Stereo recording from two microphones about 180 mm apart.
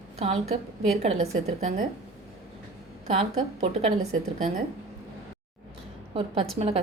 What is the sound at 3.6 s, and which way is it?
Speech, 40° right (ahead or behind).